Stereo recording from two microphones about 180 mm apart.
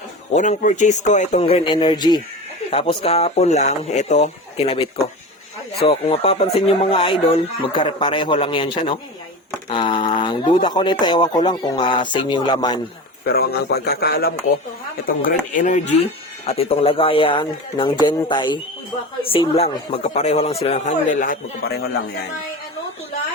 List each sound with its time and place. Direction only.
0.3 s speech: 40° left (ahead or behind); by 12.8 s 25° left (ahead or behind)
13.2 s speech: 60° left (ahead or behind)
16.5 s speech: 35° left (ahead or behind)